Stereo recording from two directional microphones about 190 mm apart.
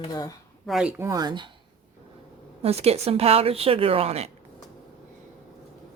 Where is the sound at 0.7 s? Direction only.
5° right (ahead or behind); by 1.4 s 20° right (ahead or behind).